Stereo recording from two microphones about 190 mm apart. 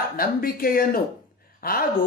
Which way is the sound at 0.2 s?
50° left (ahead or behind).